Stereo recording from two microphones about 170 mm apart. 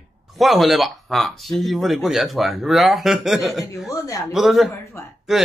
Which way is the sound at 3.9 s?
20° left (ahead or behind).